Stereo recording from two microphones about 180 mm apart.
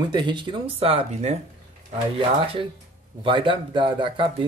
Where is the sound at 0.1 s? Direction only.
25° right (ahead or behind).